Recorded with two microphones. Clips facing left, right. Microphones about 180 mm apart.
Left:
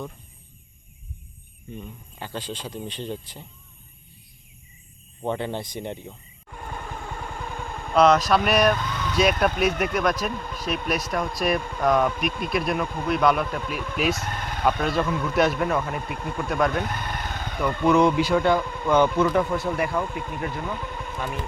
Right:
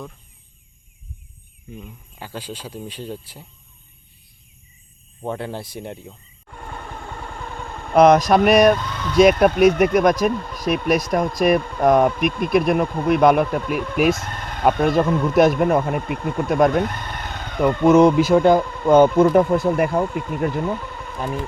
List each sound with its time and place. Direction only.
1.7 s speech: 5° right (ahead or behind)
5.2 s speech: 5° right (ahead or behind)
7.1 s vehicle: 5° left (ahead or behind)
7.9 s speech: 50° right (ahead or behind)
10.5 s speech: 10° right (ahead or behind)
10.8 s speech: 45° right (ahead or behind)
14.3 s a sound: 10° left (ahead or behind)
14.6 s speech: 50° right (ahead or behind)
17.8 s speech: 40° right (ahead or behind)
20.0 s speech: 40° right (ahead or behind)